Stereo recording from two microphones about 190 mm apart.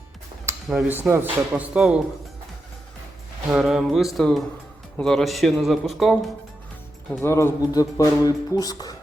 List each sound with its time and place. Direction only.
0.7 s speech: 5° right (ahead or behind)
3.5 s speech: centre (ahead or behind)
7.2 s speech: 15° left (ahead or behind)